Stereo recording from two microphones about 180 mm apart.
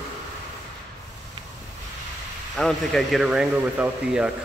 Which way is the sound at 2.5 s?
Centre (ahead or behind).